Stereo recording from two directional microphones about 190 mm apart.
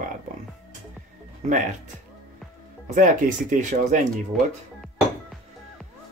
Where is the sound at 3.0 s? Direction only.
40° right (ahead or behind).